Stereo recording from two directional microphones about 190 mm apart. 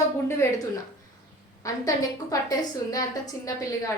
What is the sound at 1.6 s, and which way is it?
A woman's voice, 15° left (ahead or behind).